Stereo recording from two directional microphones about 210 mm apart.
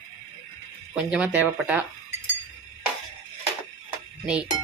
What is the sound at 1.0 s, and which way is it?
Speech, 5° right (ahead or behind).